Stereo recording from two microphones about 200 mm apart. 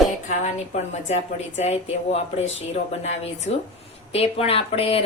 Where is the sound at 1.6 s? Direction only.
30° left (ahead or behind).